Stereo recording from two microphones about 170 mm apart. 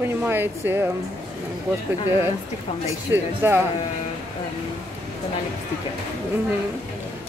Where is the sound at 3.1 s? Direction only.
10° right (ahead or behind).